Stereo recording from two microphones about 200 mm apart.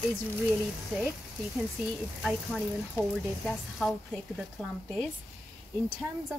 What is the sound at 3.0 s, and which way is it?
Speech, 10° left (ahead or behind).